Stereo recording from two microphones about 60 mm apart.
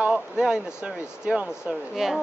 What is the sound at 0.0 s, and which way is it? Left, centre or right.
Speech, centre.